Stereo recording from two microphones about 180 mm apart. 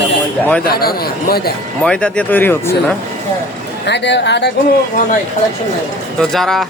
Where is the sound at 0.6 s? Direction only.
60° left (ahead or behind).